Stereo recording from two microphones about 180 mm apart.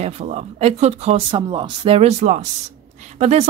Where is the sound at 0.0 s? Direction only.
35° right (ahead or behind).